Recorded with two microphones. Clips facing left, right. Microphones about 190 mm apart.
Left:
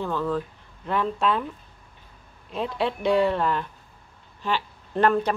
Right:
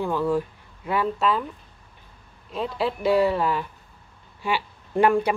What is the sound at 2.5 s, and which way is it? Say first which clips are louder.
A man's voice: even; centre (ahead or behind).